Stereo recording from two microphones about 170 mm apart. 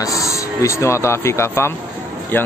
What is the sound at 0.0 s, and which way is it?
Speech, 20° left (ahead or behind).